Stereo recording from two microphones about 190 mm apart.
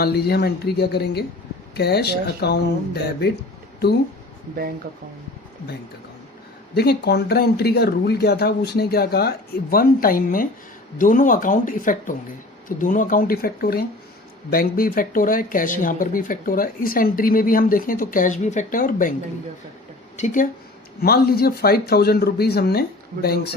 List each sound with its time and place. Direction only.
0.0 s speech: 55° left (ahead or behind)
6.7 s speech: 60° left (ahead or behind)
20.1 s speech: 40° left (ahead or behind)
21.0 s speech: 55° left (ahead or behind)